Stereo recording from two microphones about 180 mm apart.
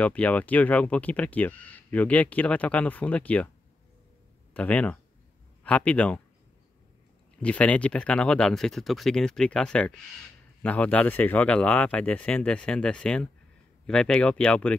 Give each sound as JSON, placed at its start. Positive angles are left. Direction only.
{"t": 0.0, "sound": "speech", "side_deg": 10}
{"t": 4.6, "sound": "speech", "side_deg": 5}
{"t": 7.4, "sound": "speech", "side_deg": 5}